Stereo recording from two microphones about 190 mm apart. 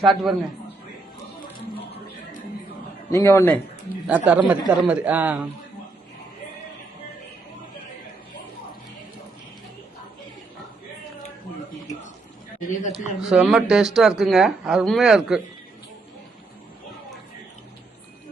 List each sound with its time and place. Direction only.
0.0 s speech: centre (ahead or behind)
3.1 s a man's voice: 15° left (ahead or behind)
4.0 s a man's voice: 10° right (ahead or behind)
12.5 s a man's voice: 45° left (ahead or behind)
13.2 s speech: 5° right (ahead or behind)